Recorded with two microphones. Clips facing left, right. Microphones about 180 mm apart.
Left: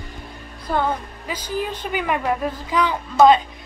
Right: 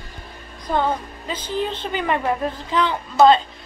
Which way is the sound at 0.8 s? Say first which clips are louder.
Right 1 dB; 10° left (ahead or behind).